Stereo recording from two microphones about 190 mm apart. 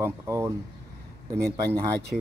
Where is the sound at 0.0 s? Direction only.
15° right (ahead or behind).